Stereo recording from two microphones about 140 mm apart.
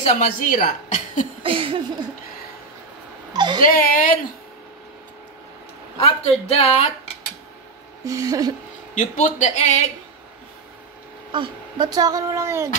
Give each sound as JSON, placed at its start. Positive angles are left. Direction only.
{"t": 0.0, "sound": "a woman's voice", "side_deg": 60}
{"t": 1.4, "sound": "a sound", "side_deg": -40}
{"t": 3.3, "sound": "a sound", "side_deg": -30}
{"t": 3.6, "sound": "speech", "side_deg": 80}
{"t": 5.9, "sound": "speech", "side_deg": 50}
{"t": 8.0, "sound": "speech", "side_deg": -25}
{"t": 8.9, "sound": "speech", "side_deg": 60}
{"t": 11.3, "sound": "speech", "side_deg": -35}